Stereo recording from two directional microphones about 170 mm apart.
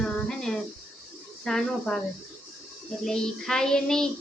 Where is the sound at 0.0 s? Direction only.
5° left (ahead or behind).